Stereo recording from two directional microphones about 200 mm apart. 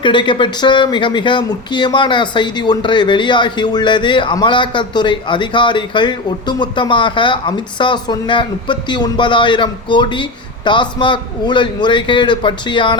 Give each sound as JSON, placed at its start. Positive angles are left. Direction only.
{"t": 0.0, "sound": "speech", "side_deg": 25}